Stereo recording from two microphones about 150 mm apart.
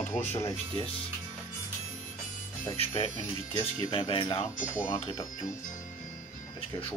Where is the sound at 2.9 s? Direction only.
25° left (ahead or behind).